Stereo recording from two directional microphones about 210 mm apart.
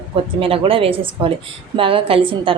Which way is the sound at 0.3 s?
25° right (ahead or behind).